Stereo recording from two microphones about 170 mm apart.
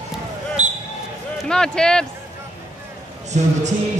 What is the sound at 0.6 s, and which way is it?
Basketball bounce, 45° right (ahead or behind).